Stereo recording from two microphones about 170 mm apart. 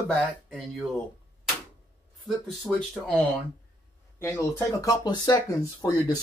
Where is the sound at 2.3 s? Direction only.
Centre (ahead or behind).